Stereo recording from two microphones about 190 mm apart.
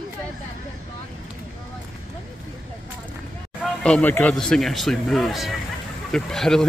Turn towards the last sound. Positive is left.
turn(degrees=5)  # may be behind; listen again after turning